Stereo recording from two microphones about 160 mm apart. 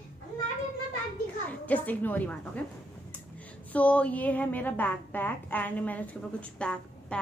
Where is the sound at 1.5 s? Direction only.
10° left (ahead or behind).